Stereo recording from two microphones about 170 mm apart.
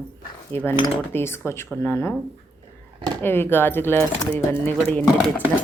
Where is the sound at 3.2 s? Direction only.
15° left (ahead or behind).